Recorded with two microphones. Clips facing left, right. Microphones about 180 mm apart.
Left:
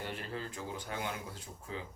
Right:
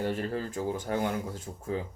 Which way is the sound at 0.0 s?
45° right (ahead or behind).